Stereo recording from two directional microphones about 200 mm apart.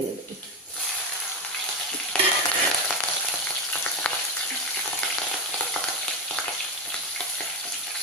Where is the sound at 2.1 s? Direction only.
5° left (ahead or behind).